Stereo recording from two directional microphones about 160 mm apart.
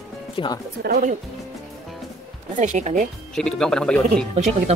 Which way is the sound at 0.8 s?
75° right (ahead or behind).